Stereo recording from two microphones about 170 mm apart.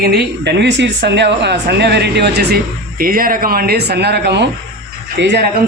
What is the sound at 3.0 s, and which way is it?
Speech, 60° right (ahead or behind).